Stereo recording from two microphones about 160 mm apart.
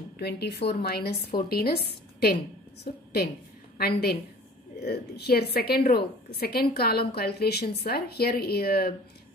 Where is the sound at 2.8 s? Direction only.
80° left.